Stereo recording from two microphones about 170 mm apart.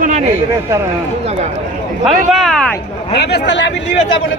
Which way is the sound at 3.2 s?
85° left.